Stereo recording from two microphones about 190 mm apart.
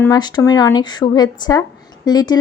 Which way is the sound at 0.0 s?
20° left (ahead or behind).